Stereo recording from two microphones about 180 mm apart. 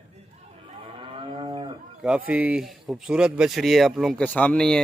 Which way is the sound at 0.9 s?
30° right (ahead or behind).